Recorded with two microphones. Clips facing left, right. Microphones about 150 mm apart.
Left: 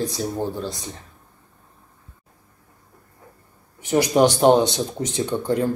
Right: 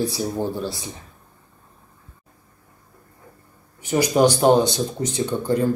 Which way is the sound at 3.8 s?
Centre (ahead or behind).